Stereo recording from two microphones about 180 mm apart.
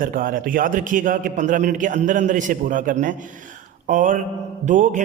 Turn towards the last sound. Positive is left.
turn(degrees=-45)  # may be behind; listen again after turning